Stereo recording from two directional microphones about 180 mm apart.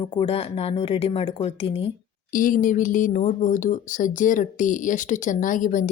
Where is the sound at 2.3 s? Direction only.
50° left (ahead or behind).